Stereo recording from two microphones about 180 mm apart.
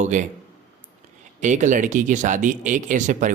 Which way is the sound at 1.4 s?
45° right (ahead or behind).